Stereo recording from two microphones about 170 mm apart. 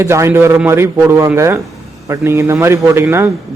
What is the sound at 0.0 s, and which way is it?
Speech, 15° right (ahead or behind).